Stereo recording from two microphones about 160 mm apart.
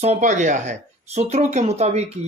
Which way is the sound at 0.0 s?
45° right (ahead or behind).